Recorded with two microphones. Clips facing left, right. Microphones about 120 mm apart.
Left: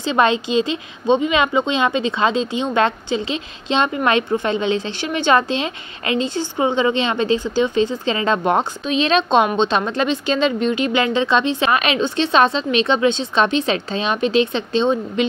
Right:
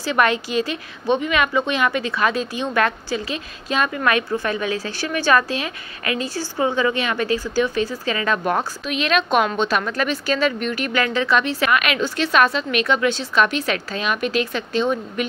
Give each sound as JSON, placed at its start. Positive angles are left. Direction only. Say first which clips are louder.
{"t": 0.0, "sound": "a woman's voice", "louder": "left 2 dB", "side_deg": 25}